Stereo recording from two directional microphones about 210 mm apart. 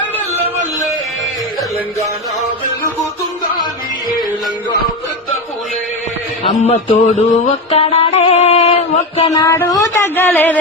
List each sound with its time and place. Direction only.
6.4 s music: 30° left (ahead or behind); by 10.6 s 10° left (ahead or behind)